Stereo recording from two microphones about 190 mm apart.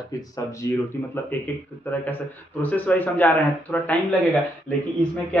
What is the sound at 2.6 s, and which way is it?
Speech, 10° left (ahead or behind).